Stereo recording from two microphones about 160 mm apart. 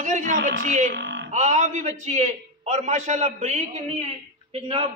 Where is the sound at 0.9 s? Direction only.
90° right.